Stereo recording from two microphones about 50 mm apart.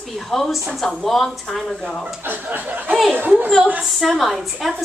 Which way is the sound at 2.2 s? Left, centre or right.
Right.